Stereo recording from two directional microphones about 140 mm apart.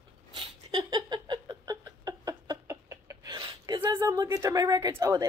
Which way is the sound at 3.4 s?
35° right (ahead or behind).